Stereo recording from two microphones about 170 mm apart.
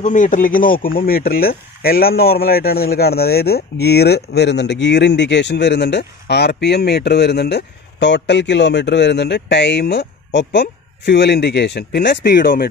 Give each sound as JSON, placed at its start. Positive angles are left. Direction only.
{"t": 0.0, "sound": "speech", "side_deg": 45}